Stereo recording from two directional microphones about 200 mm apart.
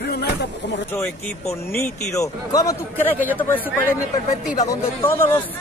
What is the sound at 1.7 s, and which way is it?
A man's voice, 15° left (ahead or behind).